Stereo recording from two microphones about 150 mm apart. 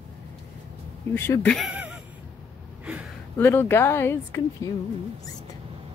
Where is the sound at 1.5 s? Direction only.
5° right (ahead or behind).